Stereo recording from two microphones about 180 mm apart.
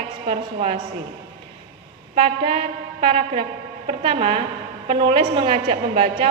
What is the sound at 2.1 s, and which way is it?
A woman's voice, 30° right (ahead or behind).